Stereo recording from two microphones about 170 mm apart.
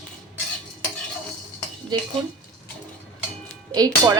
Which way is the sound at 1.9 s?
20° right (ahead or behind).